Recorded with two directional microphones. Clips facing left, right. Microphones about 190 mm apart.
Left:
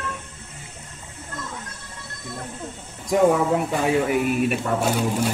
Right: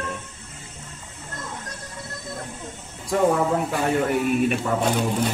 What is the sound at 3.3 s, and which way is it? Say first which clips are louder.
A man's voice: left 1 dB; 5° left (ahead or behind).